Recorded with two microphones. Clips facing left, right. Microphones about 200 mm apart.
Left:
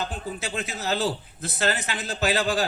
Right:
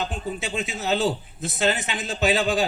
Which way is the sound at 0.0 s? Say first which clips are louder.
Right 2 dB; 20° right (ahead or behind).